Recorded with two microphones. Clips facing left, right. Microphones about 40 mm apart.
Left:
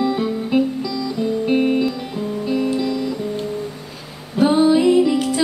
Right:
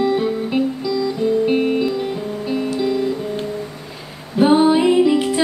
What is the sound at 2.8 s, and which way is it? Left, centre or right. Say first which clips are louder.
Music: right 3 dB; right.